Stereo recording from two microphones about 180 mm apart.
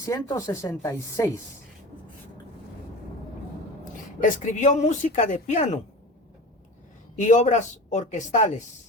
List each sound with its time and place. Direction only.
0.0 s speech: 15° left (ahead or behind)
4.2 s speech: 45° left (ahead or behind)
7.2 s speech: 45° left (ahead or behind)